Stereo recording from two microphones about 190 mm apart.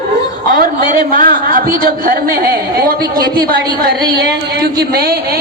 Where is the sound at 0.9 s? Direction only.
50° right (ahead or behind).